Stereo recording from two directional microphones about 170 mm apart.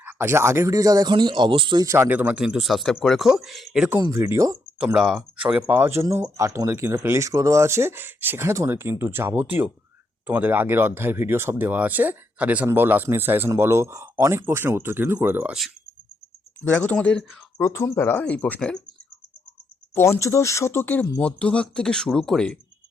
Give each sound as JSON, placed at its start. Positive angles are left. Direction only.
{"t": 0.0, "sound": "speech", "side_deg": -10}
{"t": 4.8, "sound": "speech", "side_deg": -5}
{"t": 16.6, "sound": "speech", "side_deg": 10}
{"t": 17.6, "sound": "speech", "side_deg": 15}
{"t": 19.9, "sound": "speech", "side_deg": 15}